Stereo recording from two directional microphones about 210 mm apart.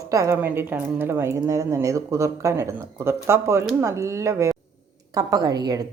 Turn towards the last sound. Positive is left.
turn(degrees=-20)  # may be behind; listen again after turning